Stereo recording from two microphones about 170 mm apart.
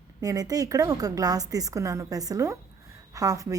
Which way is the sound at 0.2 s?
20° right (ahead or behind).